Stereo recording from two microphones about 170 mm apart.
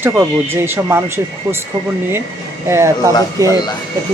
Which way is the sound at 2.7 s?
15° right (ahead or behind).